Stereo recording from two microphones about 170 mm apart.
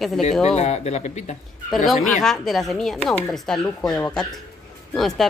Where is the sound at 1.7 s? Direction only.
Centre (ahead or behind).